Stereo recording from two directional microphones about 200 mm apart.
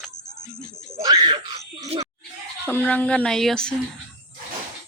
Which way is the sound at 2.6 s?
10° left (ahead or behind).